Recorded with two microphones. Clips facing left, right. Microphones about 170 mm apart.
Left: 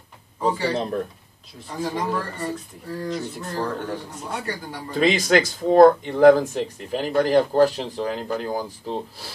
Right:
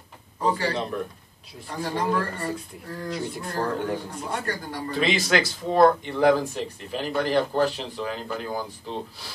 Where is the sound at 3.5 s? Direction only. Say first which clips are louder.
Right 1 dB; 5° left (ahead or behind).